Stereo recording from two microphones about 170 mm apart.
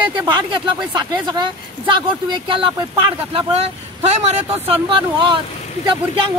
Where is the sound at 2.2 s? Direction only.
30° right (ahead or behind).